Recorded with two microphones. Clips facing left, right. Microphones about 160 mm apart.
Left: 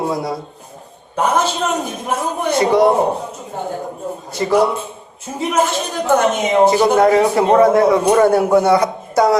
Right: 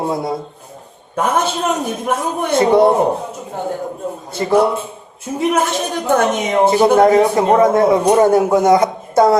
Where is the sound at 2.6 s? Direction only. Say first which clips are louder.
Right 2 dB; 25° right (ahead or behind).